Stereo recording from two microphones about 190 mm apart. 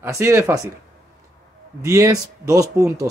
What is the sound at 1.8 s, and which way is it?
Speech, 15° right (ahead or behind).